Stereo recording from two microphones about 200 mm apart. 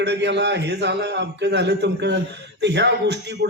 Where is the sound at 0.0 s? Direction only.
60° right (ahead or behind).